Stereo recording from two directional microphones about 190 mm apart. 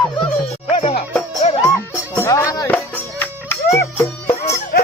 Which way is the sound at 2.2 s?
15° left (ahead or behind).